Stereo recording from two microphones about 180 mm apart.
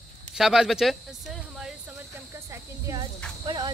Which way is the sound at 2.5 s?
15° right (ahead or behind).